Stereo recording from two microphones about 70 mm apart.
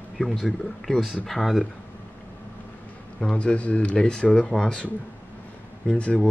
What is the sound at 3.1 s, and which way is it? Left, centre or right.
Speech, centre.